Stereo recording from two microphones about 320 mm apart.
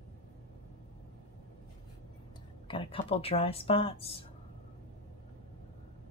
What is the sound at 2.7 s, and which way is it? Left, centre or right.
Speech, centre.